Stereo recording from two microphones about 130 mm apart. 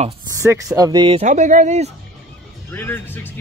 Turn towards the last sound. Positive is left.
turn(degrees=15)  # may be behind; listen again after turning